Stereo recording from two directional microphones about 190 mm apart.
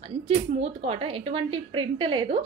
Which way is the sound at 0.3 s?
30° right (ahead or behind).